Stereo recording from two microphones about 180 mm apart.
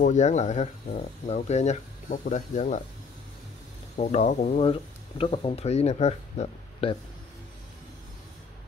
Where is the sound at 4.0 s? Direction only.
35° left (ahead or behind).